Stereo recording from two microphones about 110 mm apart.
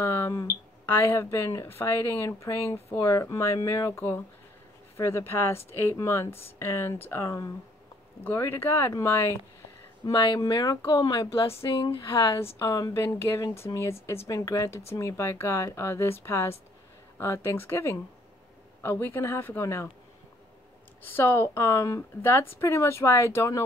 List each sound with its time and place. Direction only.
0.0 s speech: 25° left (ahead or behind)
10.1 s speech: 50° left (ahead or behind)
10.4 s speech: 30° left (ahead or behind)
11.3 s speech: 55° left (ahead or behind)
12.5 s speech: 35° left (ahead or behind)
21.0 s speech: 20° left (ahead or behind)